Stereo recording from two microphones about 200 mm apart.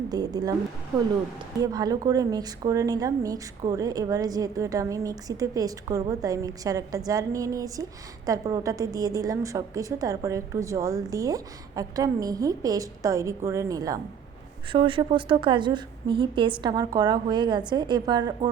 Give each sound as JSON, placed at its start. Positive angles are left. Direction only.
{"t": 0.1, "sound": "a woman's voice", "side_deg": -20}
{"t": 1.6, "sound": "a woman's voice", "side_deg": -20}